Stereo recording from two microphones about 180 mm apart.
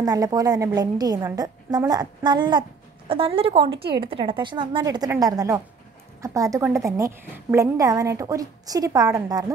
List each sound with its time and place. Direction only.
0.0 s a woman's voice: 20° right (ahead or behind)